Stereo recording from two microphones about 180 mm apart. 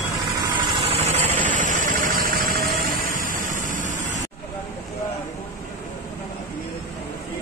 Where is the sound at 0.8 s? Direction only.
35° right (ahead or behind).